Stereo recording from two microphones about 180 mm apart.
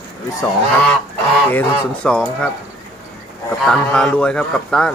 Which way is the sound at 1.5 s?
10° left (ahead or behind).